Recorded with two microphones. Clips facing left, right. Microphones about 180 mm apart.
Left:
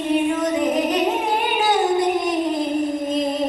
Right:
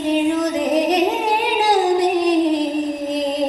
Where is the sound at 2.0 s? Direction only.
75° right (ahead or behind).